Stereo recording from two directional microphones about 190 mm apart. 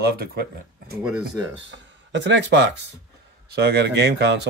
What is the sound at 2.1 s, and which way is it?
Speech, 70° right (ahead or behind).